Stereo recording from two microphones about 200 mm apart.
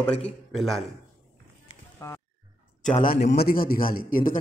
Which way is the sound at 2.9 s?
45° left (ahead or behind).